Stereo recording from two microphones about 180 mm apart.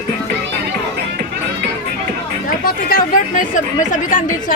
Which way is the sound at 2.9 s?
45° left (ahead or behind).